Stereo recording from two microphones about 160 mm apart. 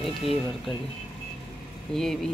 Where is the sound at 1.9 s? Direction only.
5° left (ahead or behind).